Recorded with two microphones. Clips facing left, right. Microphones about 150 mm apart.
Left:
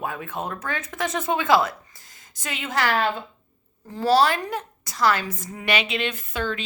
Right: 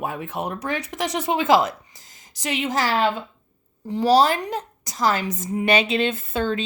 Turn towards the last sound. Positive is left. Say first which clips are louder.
# right 4 dB
turn(degrees=-30)  # may be behind; listen again after turning